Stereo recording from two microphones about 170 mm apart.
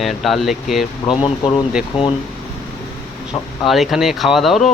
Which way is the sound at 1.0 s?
30° left (ahead or behind).